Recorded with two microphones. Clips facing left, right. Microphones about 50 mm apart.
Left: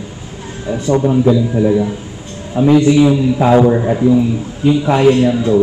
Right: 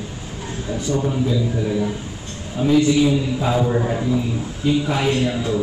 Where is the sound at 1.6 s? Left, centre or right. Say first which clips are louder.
Left 8 dB; left.